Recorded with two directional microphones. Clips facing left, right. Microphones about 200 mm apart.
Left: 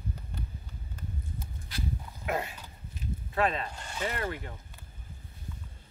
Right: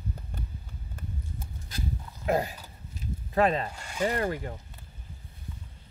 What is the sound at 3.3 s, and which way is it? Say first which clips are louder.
Speech: right 5 dB; 40° right (ahead or behind).